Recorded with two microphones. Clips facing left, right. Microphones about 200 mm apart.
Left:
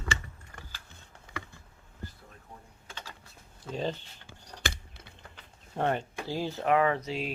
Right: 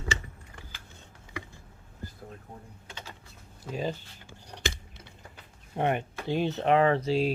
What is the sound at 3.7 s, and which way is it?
Speech, 10° right (ahead or behind).